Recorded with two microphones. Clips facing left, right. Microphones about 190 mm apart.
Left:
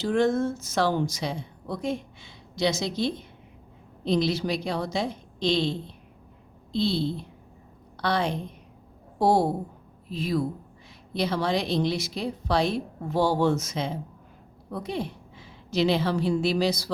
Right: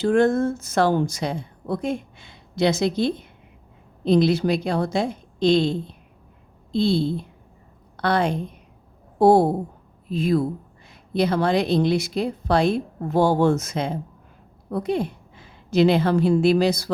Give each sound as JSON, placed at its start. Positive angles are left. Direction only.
{"t": 0.0, "sound": "a woman's voice", "side_deg": -50}
{"t": 4.1, "sound": "a woman's voice", "side_deg": -55}
{"t": 7.9, "sound": "a woman's voice", "side_deg": -50}